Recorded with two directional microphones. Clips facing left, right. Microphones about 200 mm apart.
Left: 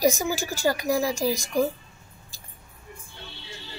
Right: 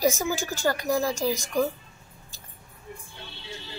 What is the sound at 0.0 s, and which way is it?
Speech, 15° left (ahead or behind).